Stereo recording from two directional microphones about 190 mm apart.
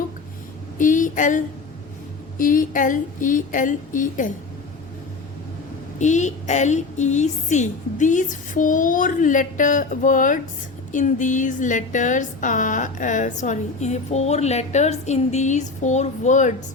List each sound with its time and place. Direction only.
0.8 s a sound: 45° left (ahead or behind)
2.4 s a woman's voice: 45° left (ahead or behind)
6.0 s a woman's voice: 40° left (ahead or behind)